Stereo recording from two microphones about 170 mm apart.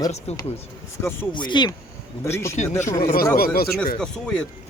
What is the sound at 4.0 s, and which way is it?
Speech, 5° left (ahead or behind).